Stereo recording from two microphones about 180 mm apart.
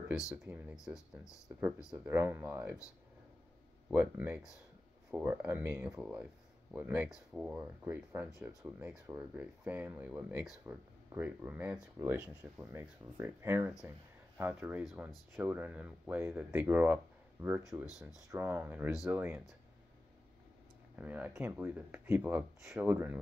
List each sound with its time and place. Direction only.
0.3 s speech: 10° right (ahead or behind)
0.9 s speech: 20° left (ahead or behind)
1.9 s speech: 10° right (ahead or behind)
3.9 s speech: 10° right (ahead or behind)
21.0 s speech: 10° right (ahead or behind)